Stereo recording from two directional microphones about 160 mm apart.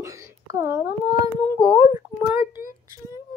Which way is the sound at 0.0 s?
20° right (ahead or behind).